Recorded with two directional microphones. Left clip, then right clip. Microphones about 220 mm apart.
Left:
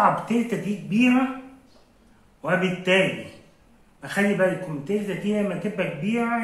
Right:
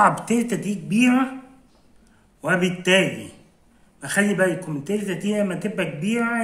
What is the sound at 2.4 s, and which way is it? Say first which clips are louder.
Speech: right 2 dB; 50° right (ahead or behind).